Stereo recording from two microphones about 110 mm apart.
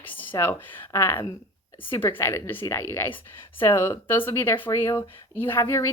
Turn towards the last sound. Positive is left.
turn(degrees=25)  # may be behind; listen again after turning